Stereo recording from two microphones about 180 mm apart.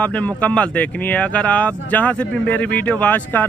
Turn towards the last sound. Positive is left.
turn(degrees=10)  # may be behind; listen again after turning